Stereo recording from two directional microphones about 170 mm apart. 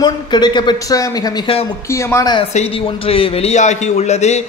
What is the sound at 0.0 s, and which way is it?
Speech, 25° left (ahead or behind).